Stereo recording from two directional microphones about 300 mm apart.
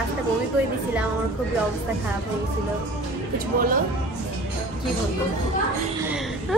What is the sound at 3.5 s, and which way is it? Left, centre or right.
Speech, right.